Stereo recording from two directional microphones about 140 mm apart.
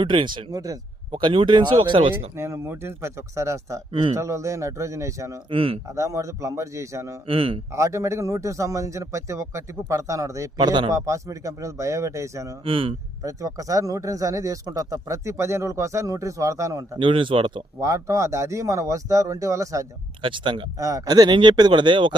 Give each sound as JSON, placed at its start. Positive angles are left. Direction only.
{"t": 0.0, "sound": "speech", "side_deg": -35}
{"t": 2.3, "sound": "a man's voice", "side_deg": -20}
{"t": 3.9, "sound": "speech", "side_deg": -40}
{"t": 4.2, "sound": "a man's voice", "side_deg": -20}
{"t": 5.5, "sound": "speech", "side_deg": -40}
{"t": 5.9, "sound": "a man's voice", "side_deg": -20}
{"t": 7.3, "sound": "speech", "side_deg": -40}
{"t": 7.7, "sound": "a man's voice", "side_deg": -20}
{"t": 12.6, "sound": "speech", "side_deg": -40}
{"t": 13.2, "sound": "a man's voice", "side_deg": -25}
{"t": 17.0, "sound": "speech", "side_deg": -35}
{"t": 17.7, "sound": "a man's voice", "side_deg": -20}
{"t": 20.2, "sound": "speech", "side_deg": -35}
{"t": 20.7, "sound": "speech", "side_deg": -25}